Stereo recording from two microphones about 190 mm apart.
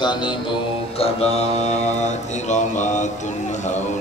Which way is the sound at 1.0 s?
35° left (ahead or behind).